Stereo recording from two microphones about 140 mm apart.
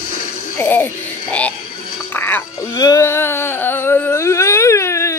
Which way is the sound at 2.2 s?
15° left (ahead or behind).